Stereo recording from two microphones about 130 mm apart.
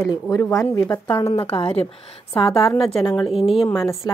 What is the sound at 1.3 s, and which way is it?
Speech, 50° left (ahead or behind).